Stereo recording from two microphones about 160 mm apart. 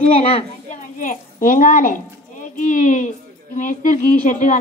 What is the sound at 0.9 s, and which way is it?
A woman's voice, 55° left (ahead or behind).